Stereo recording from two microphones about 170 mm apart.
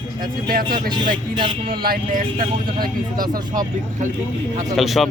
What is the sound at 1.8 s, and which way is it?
Speech, 55° right (ahead or behind).